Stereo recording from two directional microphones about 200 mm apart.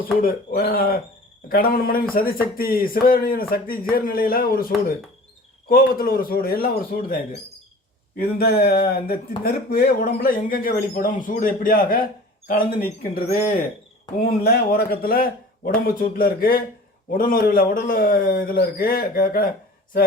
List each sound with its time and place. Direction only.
0.2 s speech: 45° left (ahead or behind)
8.2 s speech: 50° left (ahead or behind)
14.3 s speech: 50° left (ahead or behind)